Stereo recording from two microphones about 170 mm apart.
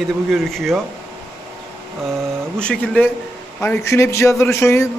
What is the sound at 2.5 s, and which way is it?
Speech, 5° left (ahead or behind).